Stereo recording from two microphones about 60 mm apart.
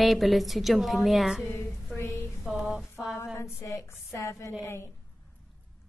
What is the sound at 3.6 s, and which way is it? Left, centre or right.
Speech, left.